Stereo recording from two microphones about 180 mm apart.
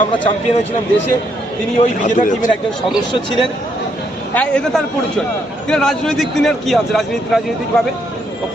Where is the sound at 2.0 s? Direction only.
45° left (ahead or behind).